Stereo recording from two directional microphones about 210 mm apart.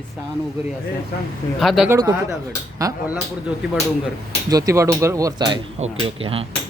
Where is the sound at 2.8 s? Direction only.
15° right (ahead or behind).